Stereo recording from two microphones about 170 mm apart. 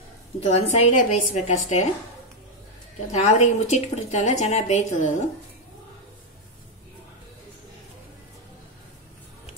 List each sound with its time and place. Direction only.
0.4 s a woman's voice: 35° left (ahead or behind)
3.1 s a woman's voice: 40° left (ahead or behind)